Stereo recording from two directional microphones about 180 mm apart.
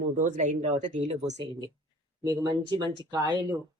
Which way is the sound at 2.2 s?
20° right (ahead or behind).